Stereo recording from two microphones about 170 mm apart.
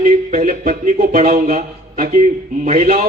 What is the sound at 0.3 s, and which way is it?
A man's voice, 45° right (ahead or behind).